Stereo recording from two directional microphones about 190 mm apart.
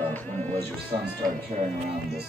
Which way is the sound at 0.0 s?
10° left (ahead or behind).